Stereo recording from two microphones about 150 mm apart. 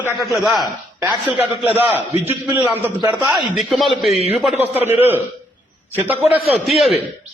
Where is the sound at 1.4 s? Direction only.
10° right (ahead or behind).